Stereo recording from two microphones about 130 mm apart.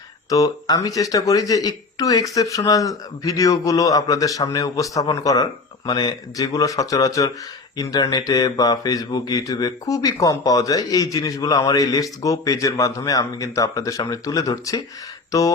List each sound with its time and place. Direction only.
0.3 s speech: 25° left (ahead or behind)